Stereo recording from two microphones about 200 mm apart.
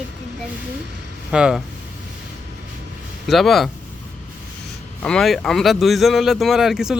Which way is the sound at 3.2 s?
Centre (ahead or behind).